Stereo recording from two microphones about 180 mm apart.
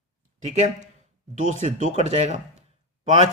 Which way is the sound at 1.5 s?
40° right (ahead or behind).